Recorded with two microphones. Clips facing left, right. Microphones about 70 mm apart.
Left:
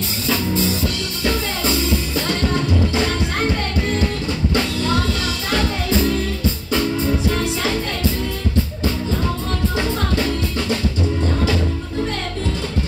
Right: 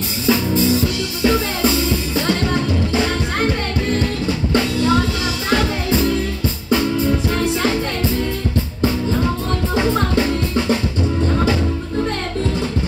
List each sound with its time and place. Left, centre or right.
0.3 s music: centre
4.6 s music: centre
10.1 s music: right